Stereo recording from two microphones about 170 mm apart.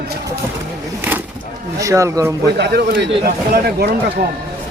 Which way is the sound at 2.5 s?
75° right (ahead or behind).